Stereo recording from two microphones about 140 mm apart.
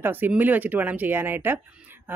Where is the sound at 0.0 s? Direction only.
15° right (ahead or behind).